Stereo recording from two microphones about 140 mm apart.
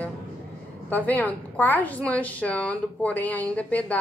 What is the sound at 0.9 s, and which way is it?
A woman's voice, 10° left (ahead or behind).